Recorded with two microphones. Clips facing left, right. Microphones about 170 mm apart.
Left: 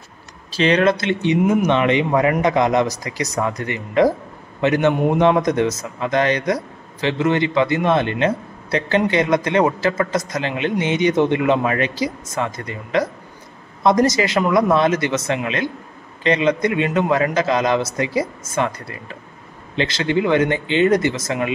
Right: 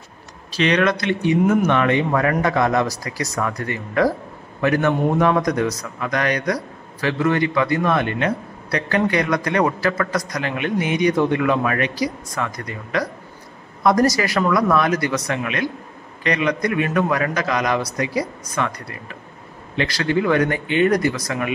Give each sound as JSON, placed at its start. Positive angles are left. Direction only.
{"t": 0.6, "sound": "speech", "side_deg": 30}
{"t": 1.4, "sound": "speech", "side_deg": 15}